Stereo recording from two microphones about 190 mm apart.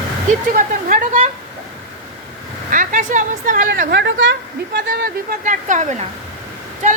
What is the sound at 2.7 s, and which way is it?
A woman's voice, 45° right (ahead or behind).